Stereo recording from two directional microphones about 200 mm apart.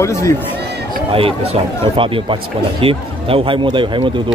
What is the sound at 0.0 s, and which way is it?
Speech, 15° left (ahead or behind).